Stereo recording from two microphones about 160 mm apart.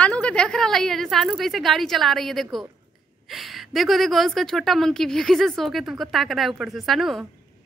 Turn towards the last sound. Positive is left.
turn(degrees=0)  # may be behind; listen again after turning